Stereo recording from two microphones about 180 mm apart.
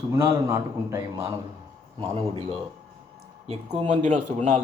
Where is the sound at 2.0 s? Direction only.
30° right (ahead or behind).